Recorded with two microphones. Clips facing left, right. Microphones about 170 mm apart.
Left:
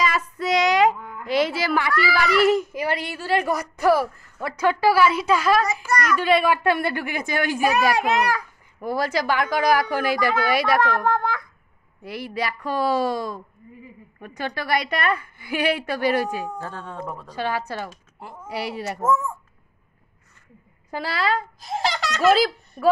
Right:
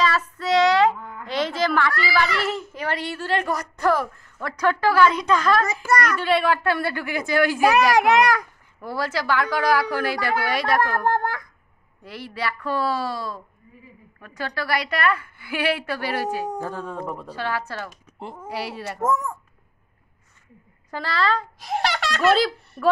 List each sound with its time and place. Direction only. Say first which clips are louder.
0.0 s a child's voice: right 1 dB; 15° left (ahead or behind)
7.7 s a child's voice: right 4 dB; 75° right (ahead or behind)
8.8 s a woman's voice: left 3 dB; 15° left (ahead or behind)
16.5 s speech: right 3 dB; 10° right (ahead or behind)
17.4 s a woman's voice: left 3 dB; 15° left (ahead or behind)
20.9 s a woman's voice: even; 10° left (ahead or behind)
21.5 s a child's voice: right 1 dB; 75° right (ahead or behind)